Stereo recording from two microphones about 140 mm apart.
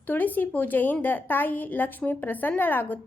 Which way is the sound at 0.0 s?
15° left (ahead or behind).